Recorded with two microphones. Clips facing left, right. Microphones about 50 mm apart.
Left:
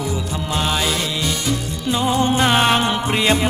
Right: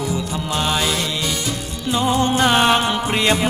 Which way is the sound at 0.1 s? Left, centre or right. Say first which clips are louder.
Right 1 dB; centre.